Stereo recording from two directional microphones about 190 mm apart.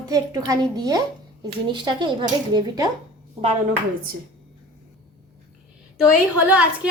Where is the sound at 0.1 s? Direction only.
20° right (ahead or behind).